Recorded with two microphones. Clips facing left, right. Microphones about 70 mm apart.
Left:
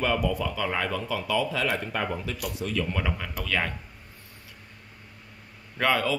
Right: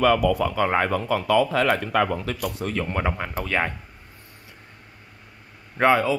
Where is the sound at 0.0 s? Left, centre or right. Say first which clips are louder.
Right 7 dB; right.